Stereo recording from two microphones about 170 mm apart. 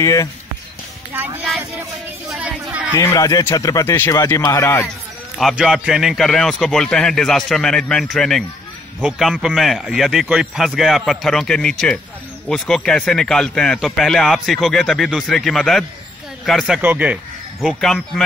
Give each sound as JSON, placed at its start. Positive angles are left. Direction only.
{"t": 0.0, "sound": "speech", "side_deg": 20}
{"t": 1.1, "sound": "speech", "side_deg": -10}
{"t": 2.9, "sound": "a man's voice", "side_deg": 15}
{"t": 5.4, "sound": "speech", "side_deg": 0}